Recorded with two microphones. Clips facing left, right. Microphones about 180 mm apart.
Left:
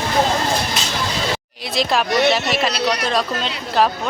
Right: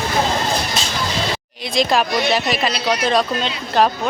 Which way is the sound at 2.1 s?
65° left (ahead or behind).